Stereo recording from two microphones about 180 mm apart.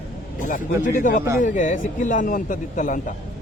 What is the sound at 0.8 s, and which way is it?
Speech, 50° left (ahead or behind).